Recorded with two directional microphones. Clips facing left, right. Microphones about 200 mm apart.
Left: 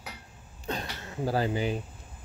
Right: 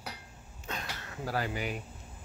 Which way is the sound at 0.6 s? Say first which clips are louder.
Left 6 dB; 30° left (ahead or behind).